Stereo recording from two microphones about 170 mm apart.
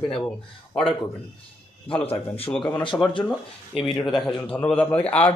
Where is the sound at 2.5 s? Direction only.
10° left (ahead or behind).